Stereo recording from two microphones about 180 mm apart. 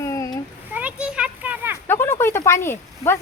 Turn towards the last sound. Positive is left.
turn(degrees=15)  # may be behind; listen again after turning